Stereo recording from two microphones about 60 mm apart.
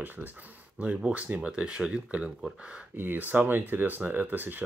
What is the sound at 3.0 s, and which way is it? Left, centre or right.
Speech, right.